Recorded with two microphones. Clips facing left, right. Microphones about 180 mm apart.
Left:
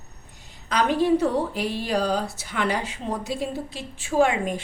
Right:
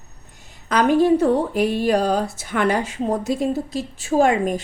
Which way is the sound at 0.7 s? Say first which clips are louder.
Right 5 dB; 50° right (ahead or behind).